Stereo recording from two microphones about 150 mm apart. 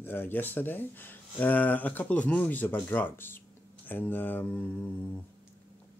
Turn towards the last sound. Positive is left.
turn(degrees=10)  # may be behind; listen again after turning